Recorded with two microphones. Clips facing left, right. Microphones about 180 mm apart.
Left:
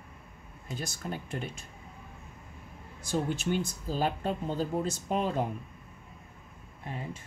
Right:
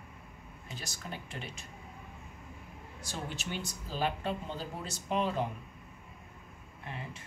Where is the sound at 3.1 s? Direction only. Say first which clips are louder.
Left 10 dB; 50° left (ahead or behind).